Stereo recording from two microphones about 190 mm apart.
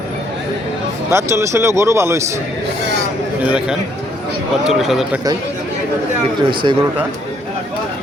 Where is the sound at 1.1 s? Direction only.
15° right (ahead or behind).